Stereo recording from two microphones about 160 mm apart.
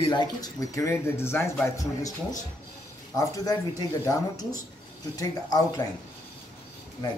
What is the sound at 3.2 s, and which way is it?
Speech, 20° left (ahead or behind).